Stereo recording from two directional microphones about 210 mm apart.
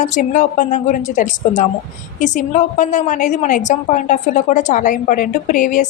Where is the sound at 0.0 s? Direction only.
35° left (ahead or behind).